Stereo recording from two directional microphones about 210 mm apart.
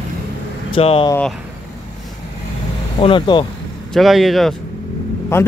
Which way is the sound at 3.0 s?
25° left (ahead or behind).